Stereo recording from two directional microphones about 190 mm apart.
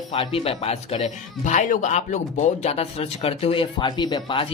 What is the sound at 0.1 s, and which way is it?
A man's voice, 30° left (ahead or behind).